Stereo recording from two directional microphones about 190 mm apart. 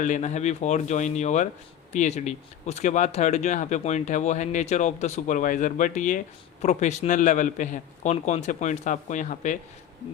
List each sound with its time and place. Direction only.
0.0 s speech: 40° left (ahead or behind)